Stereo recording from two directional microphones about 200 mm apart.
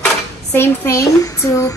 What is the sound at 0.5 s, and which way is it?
Speech, 10° left (ahead or behind).